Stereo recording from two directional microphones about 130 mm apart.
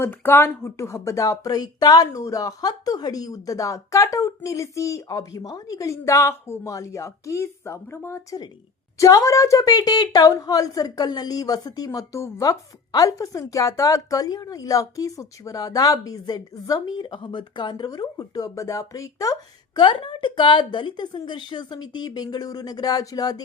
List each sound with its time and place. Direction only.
0.0 s a woman's voice: 15° left (ahead or behind)
19.8 s a woman's voice: 40° left (ahead or behind)